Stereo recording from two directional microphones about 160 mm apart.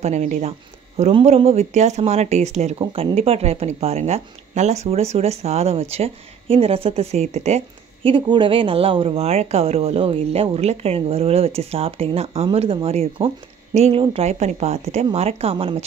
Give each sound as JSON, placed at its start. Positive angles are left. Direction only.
{"t": 0.0, "sound": "speech", "side_deg": -45}